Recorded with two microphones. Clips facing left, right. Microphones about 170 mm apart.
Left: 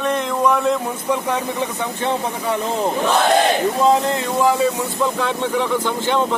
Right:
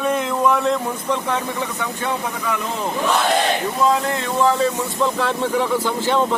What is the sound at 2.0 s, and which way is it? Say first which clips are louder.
Speech: left 3 dB; 30° left (ahead or behind).